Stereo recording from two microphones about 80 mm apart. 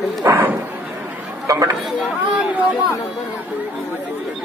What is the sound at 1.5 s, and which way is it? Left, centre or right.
Speech, right.